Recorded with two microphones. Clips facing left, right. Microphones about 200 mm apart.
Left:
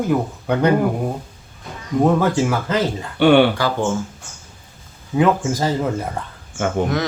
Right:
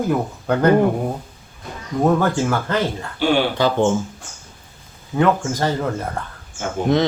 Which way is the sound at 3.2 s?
65° left (ahead or behind).